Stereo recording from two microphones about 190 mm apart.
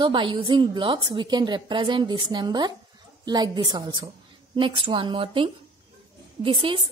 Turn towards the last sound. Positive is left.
turn(degrees=-30)  # may be behind; listen again after turning